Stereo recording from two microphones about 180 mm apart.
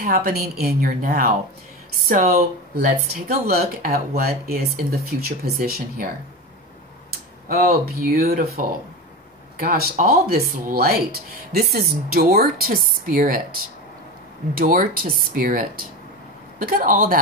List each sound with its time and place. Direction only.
0.0 s a woman's voice: 55° right (ahead or behind)
7.4 s speech: 55° right (ahead or behind)
9.6 s speech: 55° right (ahead or behind)
14.5 s a woman's voice: 55° right (ahead or behind)